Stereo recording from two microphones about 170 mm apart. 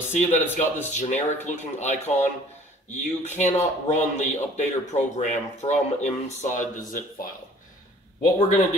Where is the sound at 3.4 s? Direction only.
45° left (ahead or behind).